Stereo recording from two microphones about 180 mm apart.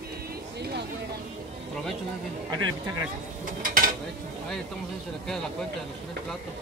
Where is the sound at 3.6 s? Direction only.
50° right (ahead or behind).